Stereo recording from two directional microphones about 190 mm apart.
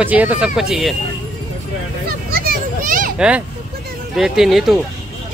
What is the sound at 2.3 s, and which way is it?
Children playing, 50° right (ahead or behind).